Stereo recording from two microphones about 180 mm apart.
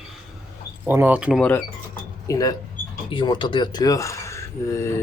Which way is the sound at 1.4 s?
10° left (ahead or behind).